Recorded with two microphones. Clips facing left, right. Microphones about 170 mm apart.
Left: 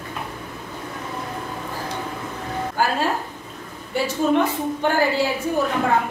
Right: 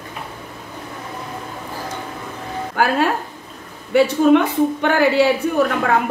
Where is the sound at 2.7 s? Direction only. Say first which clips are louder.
Right 5 dB; 65° right (ahead or behind).